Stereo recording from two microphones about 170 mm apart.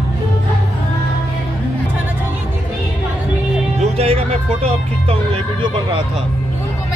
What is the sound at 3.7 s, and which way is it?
Music, 40° right (ahead or behind).